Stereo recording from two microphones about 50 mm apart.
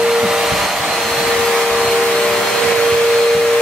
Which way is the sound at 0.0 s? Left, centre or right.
Centre.